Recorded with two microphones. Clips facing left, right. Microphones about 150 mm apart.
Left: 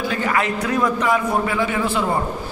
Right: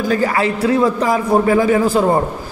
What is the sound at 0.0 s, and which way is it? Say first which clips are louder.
A man's voice: right 5 dB; 40° right (ahead or behind).